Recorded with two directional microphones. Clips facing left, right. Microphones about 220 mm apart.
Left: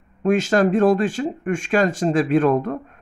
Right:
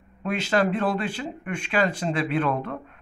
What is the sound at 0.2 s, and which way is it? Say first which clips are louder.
Speech: left 7 dB; 45° left (ahead or behind).